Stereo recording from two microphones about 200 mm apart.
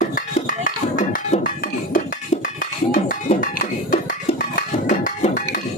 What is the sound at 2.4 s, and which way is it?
Music, 45° left (ahead or behind).